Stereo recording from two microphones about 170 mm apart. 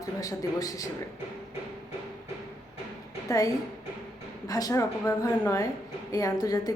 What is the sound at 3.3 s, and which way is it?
Speech, 20° left (ahead or behind).